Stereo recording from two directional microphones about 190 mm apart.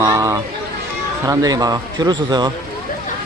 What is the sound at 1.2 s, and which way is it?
Speech, 20° right (ahead or behind).